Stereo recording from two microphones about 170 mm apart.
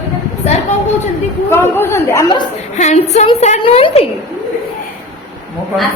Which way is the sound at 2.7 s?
40° left (ahead or behind).